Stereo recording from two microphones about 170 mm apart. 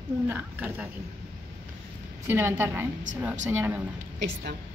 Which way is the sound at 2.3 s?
15° right (ahead or behind).